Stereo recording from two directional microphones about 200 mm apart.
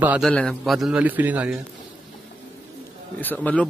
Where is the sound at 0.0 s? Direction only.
5° right (ahead or behind).